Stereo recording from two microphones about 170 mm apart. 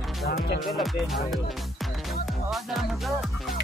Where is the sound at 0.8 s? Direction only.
Centre (ahead or behind).